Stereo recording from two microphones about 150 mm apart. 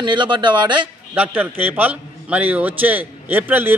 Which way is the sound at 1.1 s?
10° right (ahead or behind).